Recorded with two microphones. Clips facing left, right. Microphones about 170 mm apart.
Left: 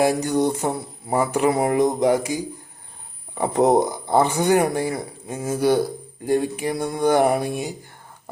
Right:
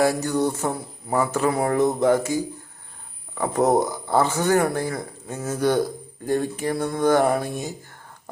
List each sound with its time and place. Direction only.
0.0 s mantra: 20° left (ahead or behind)
1.1 s speech: 15° left (ahead or behind)